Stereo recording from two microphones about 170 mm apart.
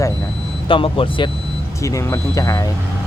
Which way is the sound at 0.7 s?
30° left (ahead or behind).